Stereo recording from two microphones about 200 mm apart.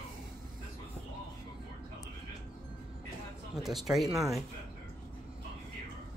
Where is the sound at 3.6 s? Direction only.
Centre (ahead or behind).